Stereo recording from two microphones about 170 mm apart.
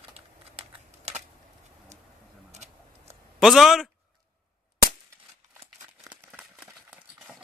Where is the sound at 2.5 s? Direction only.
40° right (ahead or behind).